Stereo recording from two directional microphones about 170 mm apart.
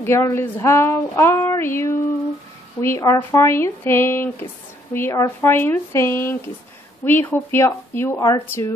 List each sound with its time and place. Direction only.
0.0 s speech: 15° left (ahead or behind)